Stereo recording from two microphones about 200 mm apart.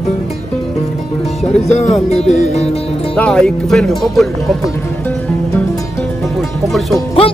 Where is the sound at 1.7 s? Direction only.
35° left (ahead or behind).